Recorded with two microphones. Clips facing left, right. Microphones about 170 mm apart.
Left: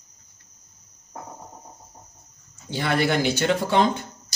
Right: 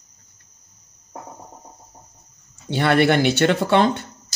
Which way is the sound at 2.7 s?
65° right (ahead or behind).